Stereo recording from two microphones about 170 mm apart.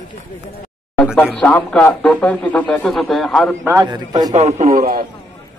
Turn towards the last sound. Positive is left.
turn(degrees=-50)  # may be behind; listen again after turning